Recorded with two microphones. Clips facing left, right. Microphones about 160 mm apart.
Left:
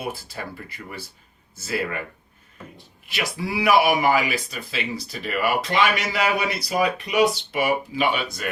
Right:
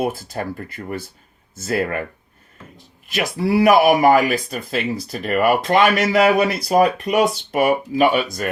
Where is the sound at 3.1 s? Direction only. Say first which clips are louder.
Right 8 dB; 45° right (ahead or behind).